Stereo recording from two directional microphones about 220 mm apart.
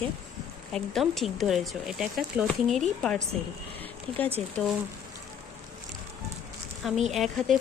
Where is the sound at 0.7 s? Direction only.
Centre (ahead or behind).